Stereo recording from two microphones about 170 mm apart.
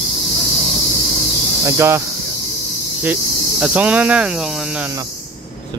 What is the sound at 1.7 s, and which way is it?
Speech, 15° right (ahead or behind).